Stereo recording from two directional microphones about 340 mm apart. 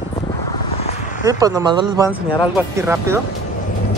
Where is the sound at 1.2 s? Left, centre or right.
Centre.